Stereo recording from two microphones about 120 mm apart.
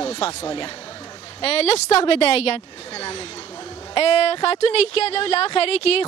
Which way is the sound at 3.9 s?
60° left (ahead or behind).